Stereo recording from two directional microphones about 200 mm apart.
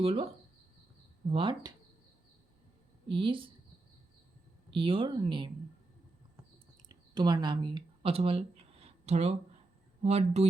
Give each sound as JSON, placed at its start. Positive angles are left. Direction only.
{"t": 0.0, "sound": "speech", "side_deg": -30}
{"t": 1.3, "sound": "speech", "side_deg": -25}
{"t": 3.1, "sound": "speech", "side_deg": -25}
{"t": 4.7, "sound": "speech", "side_deg": -25}
{"t": 6.8, "sound": "a sound", "side_deg": -20}
{"t": 10.0, "sound": "speech", "side_deg": -30}